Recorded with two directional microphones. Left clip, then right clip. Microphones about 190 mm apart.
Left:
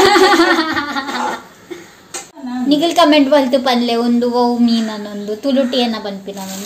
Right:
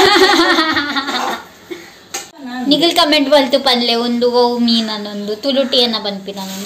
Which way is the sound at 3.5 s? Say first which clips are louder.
Right 1 dB; 10° left (ahead or behind).